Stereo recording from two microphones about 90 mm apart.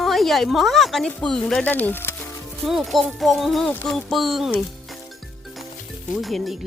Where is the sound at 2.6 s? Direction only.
Centre (ahead or behind).